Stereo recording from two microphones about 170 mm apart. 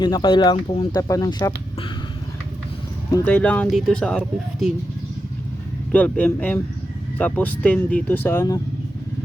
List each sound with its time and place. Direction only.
0.0 s speech: 25° left (ahead or behind)
3.2 s speech: 10° left (ahead or behind)
5.9 s speech: 10° left (ahead or behind)